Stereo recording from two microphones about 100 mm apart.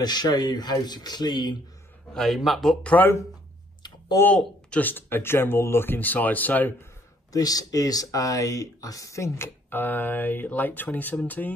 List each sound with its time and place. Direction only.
0.0 s speech: 45° left (ahead or behind)
2.1 s speech: centre (ahead or behind)
4.3 s speech: 10° left (ahead or behind)
7.3 s speech: 40° left (ahead or behind); by 11.5 s 15° left (ahead or behind)